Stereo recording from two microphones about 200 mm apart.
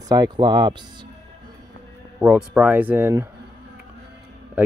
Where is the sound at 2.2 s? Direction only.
5° right (ahead or behind).